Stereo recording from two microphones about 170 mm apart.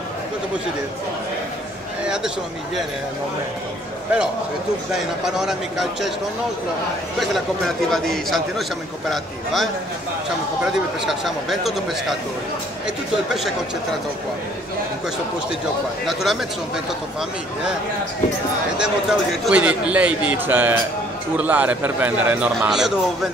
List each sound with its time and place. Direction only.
2.0 s speech: 5° right (ahead or behind)
4.9 s speech: centre (ahead or behind)
7.2 s speech: centre (ahead or behind)
16.1 s speech: centre (ahead or behind)
18.8 s a man's voice: 5° right (ahead or behind)